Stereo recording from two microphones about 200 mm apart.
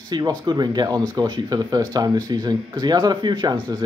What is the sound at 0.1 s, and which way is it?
Speech, 20° right (ahead or behind).